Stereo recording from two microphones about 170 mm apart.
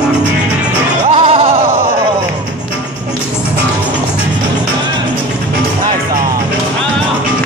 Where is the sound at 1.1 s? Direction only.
35° right (ahead or behind).